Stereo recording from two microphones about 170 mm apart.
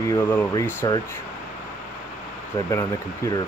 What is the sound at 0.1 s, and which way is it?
Speech, 15° left (ahead or behind).